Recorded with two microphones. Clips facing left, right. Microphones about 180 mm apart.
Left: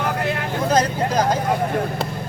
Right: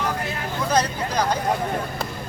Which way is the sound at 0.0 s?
65° left (ahead or behind).